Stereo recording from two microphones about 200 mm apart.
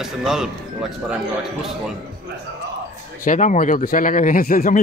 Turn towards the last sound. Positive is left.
turn(degrees=45)  # may be behind; listen again after turning